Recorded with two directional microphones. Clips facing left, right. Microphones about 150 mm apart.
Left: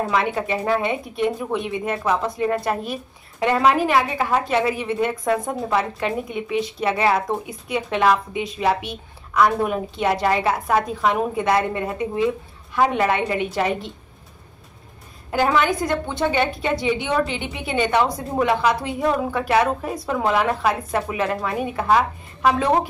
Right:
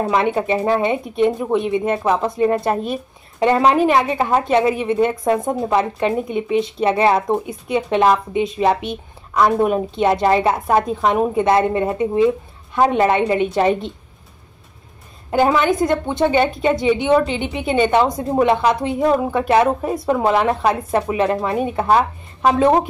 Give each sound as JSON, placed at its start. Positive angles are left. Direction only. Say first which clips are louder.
{"t": 0.0, "sound": "a woman's voice", "louder": "right 4 dB", "side_deg": -25}
{"t": 15.3, "sound": "a woman's voice", "louder": "right 4 dB", "side_deg": -25}